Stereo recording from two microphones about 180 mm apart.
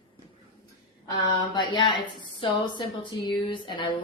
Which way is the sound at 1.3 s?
25° left (ahead or behind).